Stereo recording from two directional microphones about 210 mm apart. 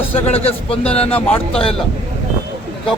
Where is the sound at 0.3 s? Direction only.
30° left (ahead or behind).